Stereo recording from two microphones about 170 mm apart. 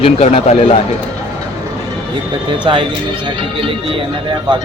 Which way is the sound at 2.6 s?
30° right (ahead or behind).